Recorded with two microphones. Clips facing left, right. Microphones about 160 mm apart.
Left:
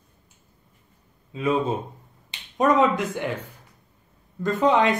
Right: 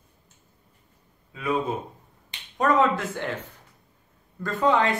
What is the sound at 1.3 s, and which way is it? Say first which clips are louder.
Speech: left 3 dB; 25° left (ahead or behind).